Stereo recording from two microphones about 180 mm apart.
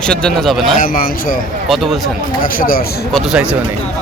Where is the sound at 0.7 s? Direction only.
50° left (ahead or behind).